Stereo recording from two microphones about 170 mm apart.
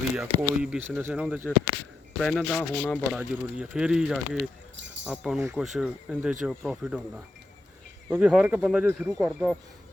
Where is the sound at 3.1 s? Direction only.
5° right (ahead or behind).